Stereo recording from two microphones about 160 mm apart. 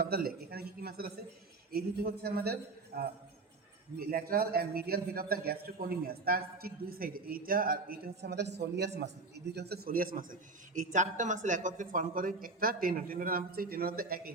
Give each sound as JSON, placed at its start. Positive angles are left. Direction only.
{"t": 0.0, "sound": "a man's voice", "side_deg": -70}